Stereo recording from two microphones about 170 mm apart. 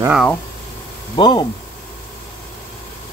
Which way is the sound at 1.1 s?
25° left (ahead or behind).